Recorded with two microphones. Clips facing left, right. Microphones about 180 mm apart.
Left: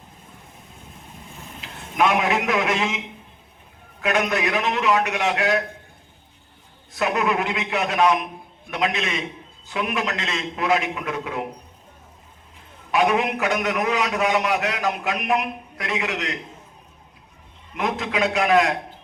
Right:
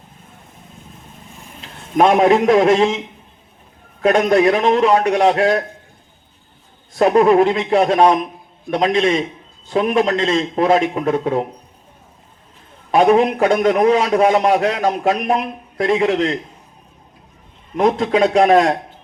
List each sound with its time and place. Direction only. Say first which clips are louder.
1.6 s a man's voice: right 7 dB; 35° right (ahead or behind)
4.0 s a man's voice: right 10 dB; 35° right (ahead or behind)
6.9 s a man's voice: right 11 dB; 35° right (ahead or behind)
12.9 s a man's voice: right 8 dB; 35° right (ahead or behind)
17.9 s a man's voice: right 9 dB; 35° right (ahead or behind)